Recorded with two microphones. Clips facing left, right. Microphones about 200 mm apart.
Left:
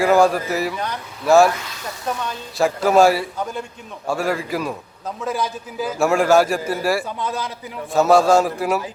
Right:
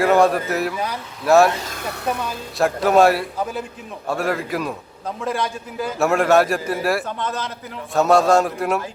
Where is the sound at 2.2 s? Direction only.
5° right (ahead or behind).